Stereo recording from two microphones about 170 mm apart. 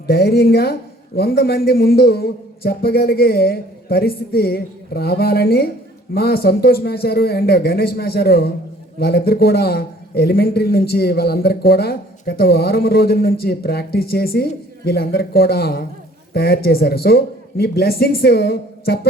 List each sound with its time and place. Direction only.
0.1 s speech: 70° left (ahead or behind)